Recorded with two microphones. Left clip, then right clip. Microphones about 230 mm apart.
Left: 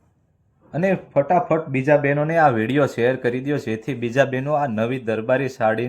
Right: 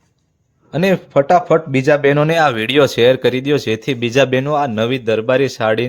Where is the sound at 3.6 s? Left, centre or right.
Right.